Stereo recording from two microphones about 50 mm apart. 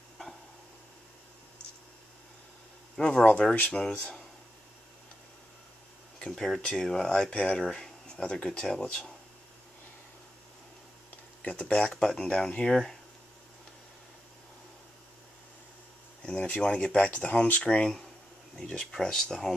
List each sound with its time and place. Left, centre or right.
3.0 s speech: centre
6.3 s speech: centre
7.3 s speech: centre
11.4 s speech: left
16.3 s speech: centre